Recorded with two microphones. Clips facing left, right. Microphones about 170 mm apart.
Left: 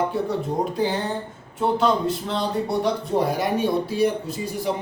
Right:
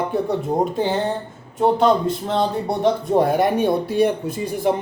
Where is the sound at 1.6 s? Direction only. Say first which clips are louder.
Right 4 dB; 45° right (ahead or behind).